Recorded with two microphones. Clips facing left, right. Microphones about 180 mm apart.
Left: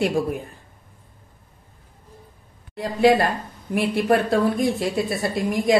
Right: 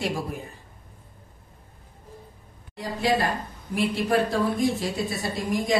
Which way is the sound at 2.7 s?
60° left (ahead or behind).